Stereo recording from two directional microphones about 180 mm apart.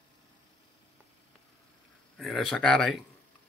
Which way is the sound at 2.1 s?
Centre (ahead or behind).